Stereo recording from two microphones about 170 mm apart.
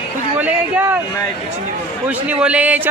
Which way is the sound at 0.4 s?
10° right (ahead or behind).